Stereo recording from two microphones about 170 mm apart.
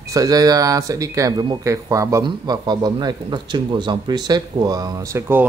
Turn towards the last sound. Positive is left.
turn(degrees=-15)  # may be behind; listen again after turning